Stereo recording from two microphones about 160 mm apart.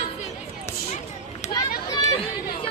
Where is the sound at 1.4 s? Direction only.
45° left (ahead or behind).